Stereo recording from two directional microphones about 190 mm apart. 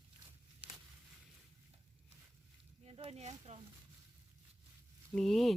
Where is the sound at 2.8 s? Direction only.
30° right (ahead or behind).